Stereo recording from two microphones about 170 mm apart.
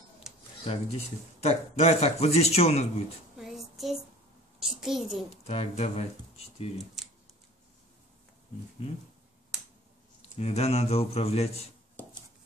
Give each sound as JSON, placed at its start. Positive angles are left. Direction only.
{"t": 0.7, "sound": "speech", "side_deg": 40}
{"t": 3.3, "sound": "child singing", "side_deg": 0}
{"t": 4.6, "sound": "a child's voice", "side_deg": 0}
{"t": 5.5, "sound": "speech", "side_deg": 40}
{"t": 10.3, "sound": "speech", "side_deg": 35}